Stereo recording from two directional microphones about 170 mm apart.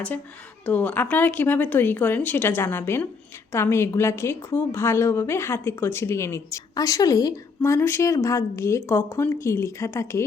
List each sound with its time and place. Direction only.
0.6 s a woman's voice: 10° left (ahead or behind)